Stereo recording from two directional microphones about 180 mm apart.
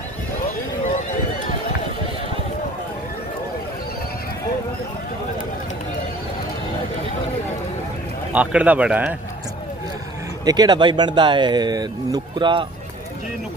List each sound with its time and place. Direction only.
8.3 s speech: 5° right (ahead or behind)
10.4 s speech: 25° right (ahead or behind)